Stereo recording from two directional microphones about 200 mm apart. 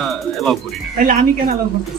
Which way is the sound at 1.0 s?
45° right (ahead or behind).